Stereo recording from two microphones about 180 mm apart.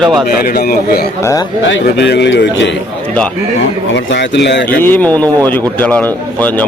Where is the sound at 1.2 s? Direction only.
15° left (ahead or behind).